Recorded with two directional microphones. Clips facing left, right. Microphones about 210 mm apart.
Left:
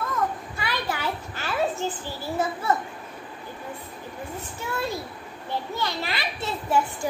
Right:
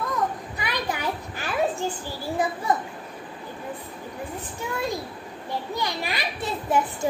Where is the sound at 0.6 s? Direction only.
15° right (ahead or behind).